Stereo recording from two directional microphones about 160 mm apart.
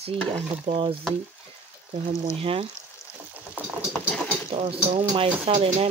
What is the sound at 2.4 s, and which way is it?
Speech, 35° right (ahead or behind).